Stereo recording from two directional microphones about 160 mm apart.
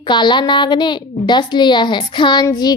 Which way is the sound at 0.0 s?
30° left (ahead or behind).